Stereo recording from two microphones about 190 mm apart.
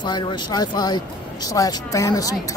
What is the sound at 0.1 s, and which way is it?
Speech, 20° left (ahead or behind).